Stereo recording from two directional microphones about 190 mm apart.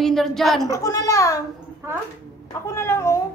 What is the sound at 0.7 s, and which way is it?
Speech, 15° left (ahead or behind).